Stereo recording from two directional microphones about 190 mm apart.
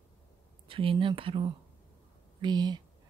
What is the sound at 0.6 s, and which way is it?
Speech, 30° right (ahead or behind).